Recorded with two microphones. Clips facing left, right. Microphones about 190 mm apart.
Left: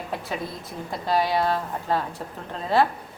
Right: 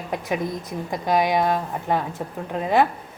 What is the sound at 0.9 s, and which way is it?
A woman's voice, 15° right (ahead or behind).